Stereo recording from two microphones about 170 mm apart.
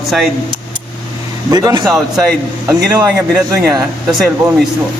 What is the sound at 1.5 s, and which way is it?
Speech, 20° right (ahead or behind).